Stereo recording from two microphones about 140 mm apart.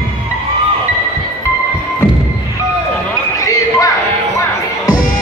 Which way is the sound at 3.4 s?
25° left (ahead or behind).